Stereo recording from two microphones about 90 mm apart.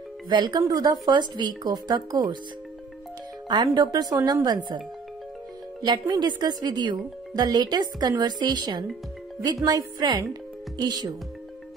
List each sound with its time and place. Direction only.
0.3 s speech: 50° right (ahead or behind)
1.0 s speech: 55° right (ahead or behind)
3.4 s speech: 50° right (ahead or behind)
5.9 s speech: 50° right (ahead or behind)